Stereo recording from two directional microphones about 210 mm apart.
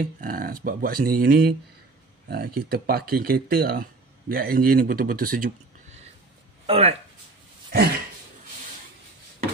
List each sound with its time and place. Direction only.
0.0 s speech: 40° right (ahead or behind)